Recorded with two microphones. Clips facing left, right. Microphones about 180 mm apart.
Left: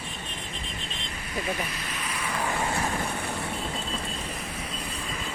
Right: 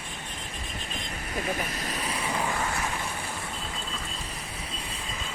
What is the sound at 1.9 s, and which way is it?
Vehicle, 35° right (ahead or behind).